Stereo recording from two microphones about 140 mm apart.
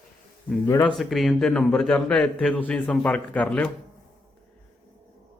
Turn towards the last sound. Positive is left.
turn(degrees=10)  # may be behind; listen again after turning